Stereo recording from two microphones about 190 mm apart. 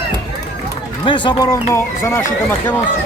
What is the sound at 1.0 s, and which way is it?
Speech, 25° left (ahead or behind).